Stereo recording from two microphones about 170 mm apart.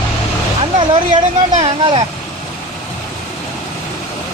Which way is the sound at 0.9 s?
30° right (ahead or behind).